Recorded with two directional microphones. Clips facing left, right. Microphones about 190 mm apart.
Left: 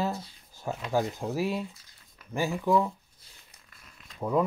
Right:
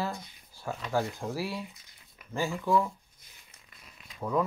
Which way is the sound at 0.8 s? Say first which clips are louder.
Left 2 dB; 15° left (ahead or behind).